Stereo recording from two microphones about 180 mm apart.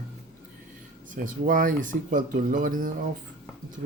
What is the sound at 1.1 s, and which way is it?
Speech, 50° right (ahead or behind).